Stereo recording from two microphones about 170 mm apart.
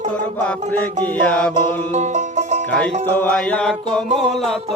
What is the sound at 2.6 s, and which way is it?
Music, 5° left (ahead or behind).